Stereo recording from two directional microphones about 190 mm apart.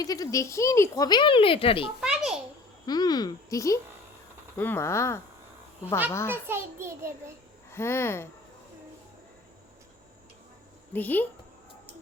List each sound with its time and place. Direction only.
0.0 s speech: 20° left (ahead or behind)
2.0 s a sound: 5° right (ahead or behind)
2.8 s speech: 20° left (ahead or behind)
6.5 s a child's voice: 15° right (ahead or behind)
7.7 s speech: 15° left (ahead or behind)
10.9 s speech: 10° left (ahead or behind)